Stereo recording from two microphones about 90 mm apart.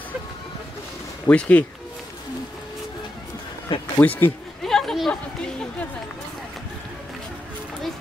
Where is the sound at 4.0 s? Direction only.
20° left (ahead or behind).